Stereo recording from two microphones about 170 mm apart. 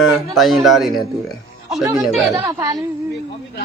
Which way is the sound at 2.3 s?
20° right (ahead or behind).